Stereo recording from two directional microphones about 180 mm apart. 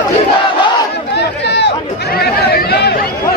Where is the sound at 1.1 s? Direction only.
70° left (ahead or behind).